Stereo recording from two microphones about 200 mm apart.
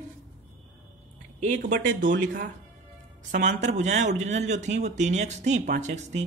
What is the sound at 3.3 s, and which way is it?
Speech, 35° right (ahead or behind).